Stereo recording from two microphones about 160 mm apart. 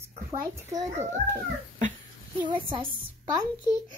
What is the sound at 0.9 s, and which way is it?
Speech, 45° right (ahead or behind).